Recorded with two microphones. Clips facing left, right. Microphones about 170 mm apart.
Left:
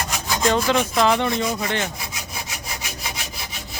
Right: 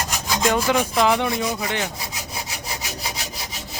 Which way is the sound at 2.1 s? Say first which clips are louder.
Right 1 dB; 35° right (ahead or behind).